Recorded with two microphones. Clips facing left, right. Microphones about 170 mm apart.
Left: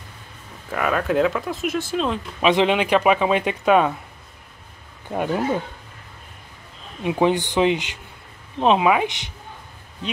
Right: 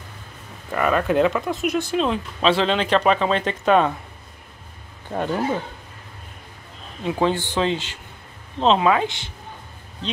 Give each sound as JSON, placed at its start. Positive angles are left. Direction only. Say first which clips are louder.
{"t": 0.7, "sound": "speech", "louder": "right 2 dB", "side_deg": 0}
{"t": 2.4, "sound": "speech", "louder": "left 2 dB", "side_deg": 15}
{"t": 5.1, "sound": "speech", "louder": "left 1 dB", "side_deg": 10}
{"t": 7.0, "sound": "speech", "louder": "left 2 dB", "side_deg": 15}